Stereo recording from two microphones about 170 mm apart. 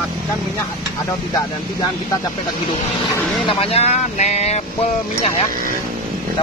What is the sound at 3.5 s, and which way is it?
Speech, 35° left (ahead or behind).